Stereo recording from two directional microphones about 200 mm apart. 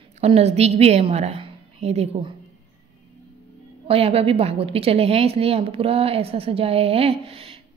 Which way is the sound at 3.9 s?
30° right (ahead or behind).